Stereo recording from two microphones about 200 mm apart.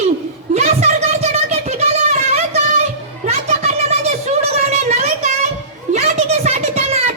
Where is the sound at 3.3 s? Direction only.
30° right (ahead or behind).